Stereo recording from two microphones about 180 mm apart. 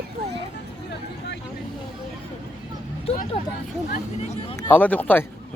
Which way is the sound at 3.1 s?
35° left (ahead or behind).